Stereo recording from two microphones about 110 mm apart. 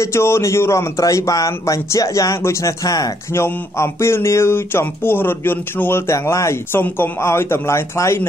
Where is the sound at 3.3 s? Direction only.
25° left (ahead or behind).